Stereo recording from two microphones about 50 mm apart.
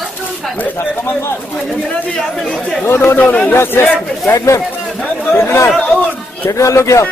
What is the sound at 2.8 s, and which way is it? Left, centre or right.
Speech, left.